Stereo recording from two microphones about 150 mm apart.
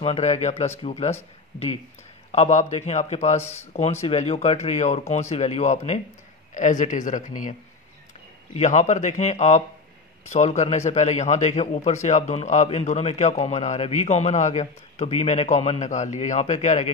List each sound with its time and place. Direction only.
0.0 s a man's voice: 45° left (ahead or behind)
2.3 s a man's voice: 45° left (ahead or behind)
8.5 s a man's voice: 50° left (ahead or behind)